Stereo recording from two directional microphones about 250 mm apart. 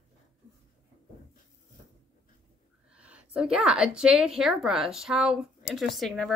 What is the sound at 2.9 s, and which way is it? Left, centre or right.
A woman's voice, centre.